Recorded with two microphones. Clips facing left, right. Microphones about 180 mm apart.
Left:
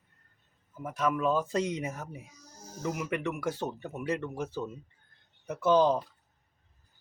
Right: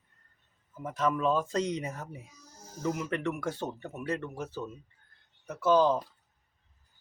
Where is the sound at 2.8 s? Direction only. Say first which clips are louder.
Right 1 dB; 15° left (ahead or behind).